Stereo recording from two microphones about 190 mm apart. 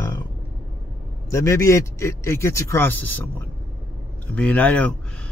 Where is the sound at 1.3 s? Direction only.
15° left (ahead or behind).